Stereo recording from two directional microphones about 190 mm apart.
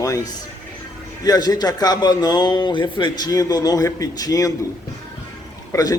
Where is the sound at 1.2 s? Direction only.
20° left (ahead or behind).